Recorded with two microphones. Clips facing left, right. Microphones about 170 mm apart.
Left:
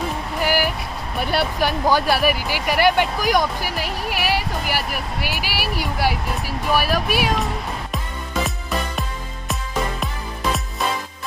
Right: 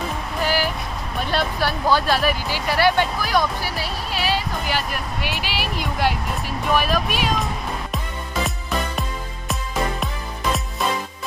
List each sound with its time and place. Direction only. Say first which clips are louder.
0.4 s speech: left 1 dB; 10° left (ahead or behind)
8.5 s music: even; centre (ahead or behind)